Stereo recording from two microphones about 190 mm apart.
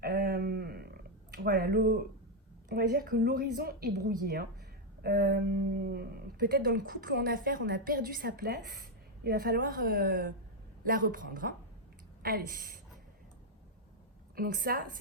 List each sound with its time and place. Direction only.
0.0 s a sound: 50° right (ahead or behind)
2.6 s speech: 55° right (ahead or behind)
14.3 s speech: 50° right (ahead or behind)